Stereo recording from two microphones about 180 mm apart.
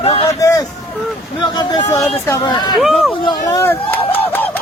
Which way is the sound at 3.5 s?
15° left (ahead or behind).